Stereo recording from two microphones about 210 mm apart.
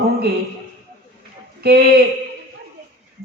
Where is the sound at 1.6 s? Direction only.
50° right (ahead or behind).